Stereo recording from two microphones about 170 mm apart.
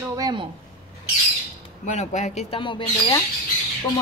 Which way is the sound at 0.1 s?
25° right (ahead or behind).